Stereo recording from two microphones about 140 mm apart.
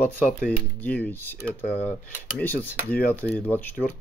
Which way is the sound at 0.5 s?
10° left (ahead or behind).